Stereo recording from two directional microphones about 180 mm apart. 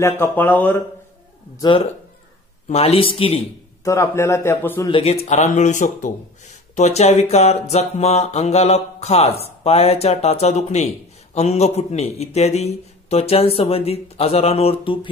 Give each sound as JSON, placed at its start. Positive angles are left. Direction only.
{"t": 0.0, "sound": "a man's voice", "side_deg": 10}
{"t": 2.7, "sound": "speech", "side_deg": 35}
{"t": 3.8, "sound": "a man's voice", "side_deg": 15}
{"t": 4.9, "sound": "speech", "side_deg": 35}